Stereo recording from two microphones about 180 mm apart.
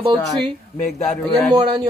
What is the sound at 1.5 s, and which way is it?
Speech, 25° right (ahead or behind).